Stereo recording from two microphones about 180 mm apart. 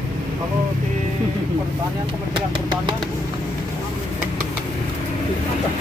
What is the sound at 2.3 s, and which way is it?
Vehicle, 25° right (ahead or behind).